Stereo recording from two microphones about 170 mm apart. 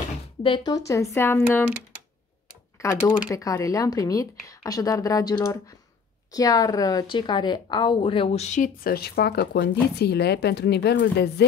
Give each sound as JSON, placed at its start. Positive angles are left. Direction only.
{"t": 0.4, "sound": "speech", "side_deg": 25}
{"t": 2.8, "sound": "a woman's voice", "side_deg": 15}